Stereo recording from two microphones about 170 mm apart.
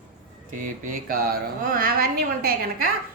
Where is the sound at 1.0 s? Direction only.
60° right (ahead or behind).